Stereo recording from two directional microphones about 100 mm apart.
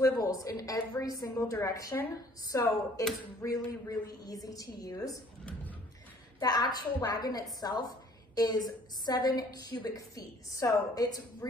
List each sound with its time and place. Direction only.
0.0 s a woman's voice: 35° left (ahead or behind)
6.4 s a woman's voice: 45° left (ahead or behind)